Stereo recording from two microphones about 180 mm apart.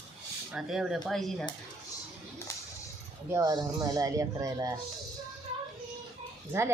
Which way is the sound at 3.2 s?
15° right (ahead or behind).